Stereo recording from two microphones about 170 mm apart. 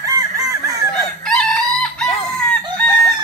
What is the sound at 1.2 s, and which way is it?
Chicken, 5° left (ahead or behind).